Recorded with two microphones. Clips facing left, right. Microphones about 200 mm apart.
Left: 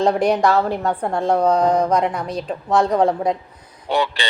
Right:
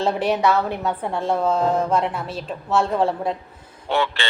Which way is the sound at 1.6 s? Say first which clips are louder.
Left 3 dB; 15° left (ahead or behind).